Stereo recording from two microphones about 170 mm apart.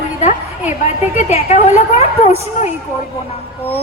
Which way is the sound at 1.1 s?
40° left (ahead or behind).